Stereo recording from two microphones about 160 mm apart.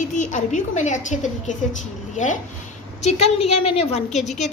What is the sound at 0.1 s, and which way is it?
A woman's voice, 50° left (ahead or behind).